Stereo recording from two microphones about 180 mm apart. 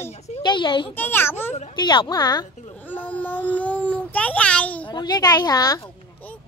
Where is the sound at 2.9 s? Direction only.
10° left (ahead or behind).